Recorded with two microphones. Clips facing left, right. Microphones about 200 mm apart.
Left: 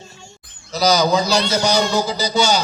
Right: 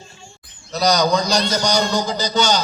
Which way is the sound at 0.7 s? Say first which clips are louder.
Left 1 dB; centre (ahead or behind).